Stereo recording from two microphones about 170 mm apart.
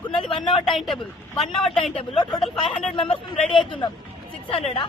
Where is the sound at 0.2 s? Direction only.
30° left (ahead or behind).